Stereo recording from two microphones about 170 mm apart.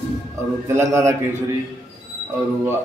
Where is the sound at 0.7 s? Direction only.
15° right (ahead or behind).